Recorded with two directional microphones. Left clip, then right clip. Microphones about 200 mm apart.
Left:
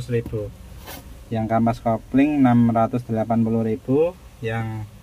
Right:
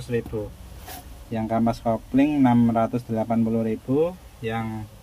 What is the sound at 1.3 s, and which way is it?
Speech, centre (ahead or behind).